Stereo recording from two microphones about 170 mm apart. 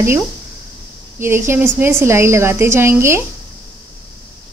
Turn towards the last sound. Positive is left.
turn(degrees=-15)  # may be behind; listen again after turning